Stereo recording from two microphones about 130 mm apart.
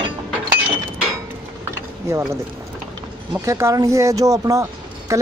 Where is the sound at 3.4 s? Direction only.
20° right (ahead or behind).